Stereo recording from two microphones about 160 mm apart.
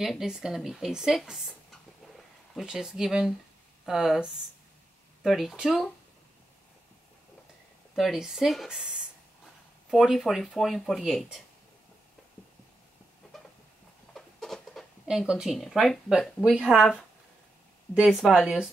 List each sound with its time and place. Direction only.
0.0 s speech: 5° right (ahead or behind)
7.9 s speech: centre (ahead or behind)
14.1 s speech: centre (ahead or behind)